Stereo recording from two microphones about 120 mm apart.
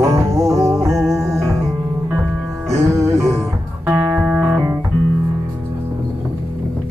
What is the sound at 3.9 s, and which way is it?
Music, 10° right (ahead or behind).